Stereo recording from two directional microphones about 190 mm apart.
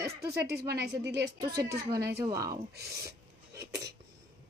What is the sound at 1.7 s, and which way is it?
Speech, 20° right (ahead or behind).